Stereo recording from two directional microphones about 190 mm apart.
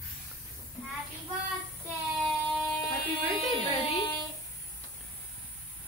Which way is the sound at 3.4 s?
25° left (ahead or behind).